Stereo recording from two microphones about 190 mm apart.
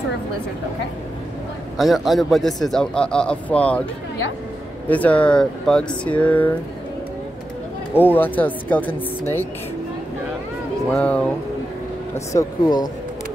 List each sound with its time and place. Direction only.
1.8 s a man's voice: centre (ahead or behind)
4.8 s a man's voice: 10° left (ahead or behind)
7.9 s speech: 10° left (ahead or behind)
10.9 s speech: 5° left (ahead or behind)
12.3 s speech: 20° left (ahead or behind)